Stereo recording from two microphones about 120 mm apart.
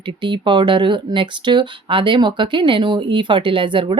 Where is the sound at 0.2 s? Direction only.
40° right (ahead or behind).